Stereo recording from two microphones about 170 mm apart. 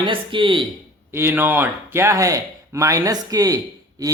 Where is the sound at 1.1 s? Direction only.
15° right (ahead or behind).